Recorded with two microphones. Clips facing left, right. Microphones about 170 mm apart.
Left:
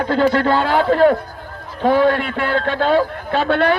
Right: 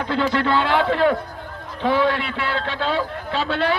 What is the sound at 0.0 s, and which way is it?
A man's voice, 45° left (ahead or behind).